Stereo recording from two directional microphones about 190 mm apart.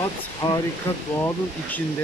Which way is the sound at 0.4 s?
20° left (ahead or behind).